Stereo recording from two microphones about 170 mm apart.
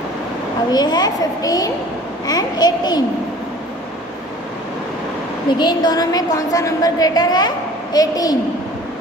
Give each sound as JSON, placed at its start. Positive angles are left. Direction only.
{"t": 0.7, "sound": "a woman's voice", "side_deg": 25}
{"t": 5.5, "sound": "a woman's voice", "side_deg": 25}